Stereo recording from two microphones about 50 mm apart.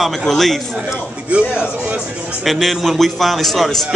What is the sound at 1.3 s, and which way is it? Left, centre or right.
Speech, right.